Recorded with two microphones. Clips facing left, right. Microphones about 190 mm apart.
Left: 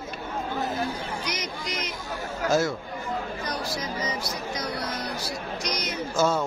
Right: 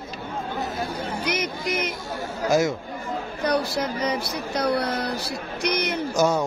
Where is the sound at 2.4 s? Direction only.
15° right (ahead or behind).